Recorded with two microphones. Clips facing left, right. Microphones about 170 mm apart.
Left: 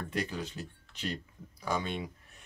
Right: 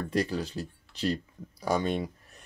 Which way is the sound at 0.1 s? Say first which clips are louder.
Right 7 dB; 35° right (ahead or behind).